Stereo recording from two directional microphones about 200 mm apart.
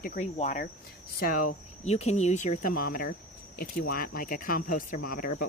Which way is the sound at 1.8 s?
30° left (ahead or behind).